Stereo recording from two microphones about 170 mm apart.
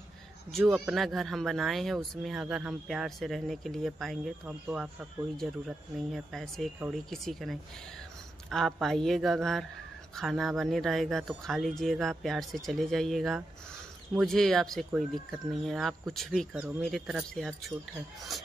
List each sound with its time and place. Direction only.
0.5 s speech: centre (ahead or behind)